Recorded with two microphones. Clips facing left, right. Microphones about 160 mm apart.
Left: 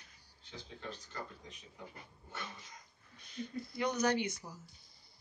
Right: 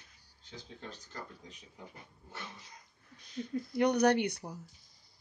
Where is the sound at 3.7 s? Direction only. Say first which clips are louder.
Right 6 dB; 65° right (ahead or behind).